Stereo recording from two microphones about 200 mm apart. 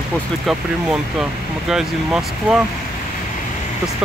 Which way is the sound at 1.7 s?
5° right (ahead or behind).